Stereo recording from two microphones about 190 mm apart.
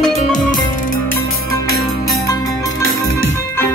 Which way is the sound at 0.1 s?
35° left (ahead or behind).